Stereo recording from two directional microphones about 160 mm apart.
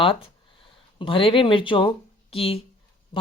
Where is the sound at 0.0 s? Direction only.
35° left (ahead or behind).